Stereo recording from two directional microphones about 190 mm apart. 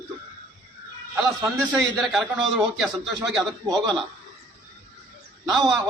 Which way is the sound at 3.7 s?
20° right (ahead or behind).